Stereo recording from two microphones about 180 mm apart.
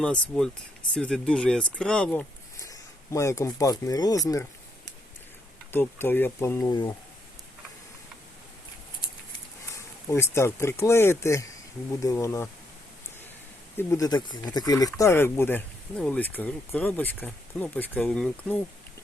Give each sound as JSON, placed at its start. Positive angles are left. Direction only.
{"t": 0.0, "sound": "speech", "side_deg": 5}
{"t": 2.6, "sound": "speech", "side_deg": 20}
{"t": 5.7, "sound": "speech", "side_deg": 10}
{"t": 9.7, "sound": "speech", "side_deg": 15}
{"t": 13.7, "sound": "speech", "side_deg": 20}